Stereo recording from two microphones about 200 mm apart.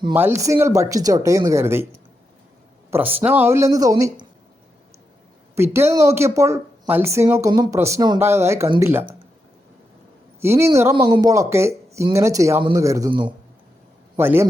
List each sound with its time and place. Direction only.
0.1 s speech: 10° right (ahead or behind)
2.9 s speech: 10° right (ahead or behind)
5.5 s speech: 10° right (ahead or behind)
10.4 s speech: 15° right (ahead or behind)
14.2 s speech: 10° right (ahead or behind)